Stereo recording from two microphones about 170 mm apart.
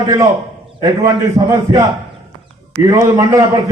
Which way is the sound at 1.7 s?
20° right (ahead or behind).